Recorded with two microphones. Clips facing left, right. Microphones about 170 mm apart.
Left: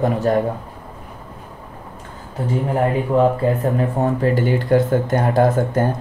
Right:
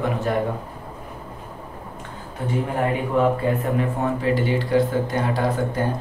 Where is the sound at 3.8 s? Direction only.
40° left (ahead or behind).